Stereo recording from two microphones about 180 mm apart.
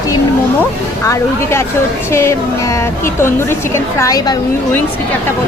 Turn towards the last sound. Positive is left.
turn(degrees=20)  # may be behind; listen again after turning